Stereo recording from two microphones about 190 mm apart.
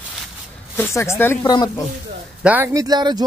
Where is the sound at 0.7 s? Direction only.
15° left (ahead or behind).